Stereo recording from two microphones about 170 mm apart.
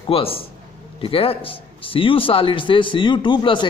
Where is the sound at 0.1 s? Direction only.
35° left (ahead or behind).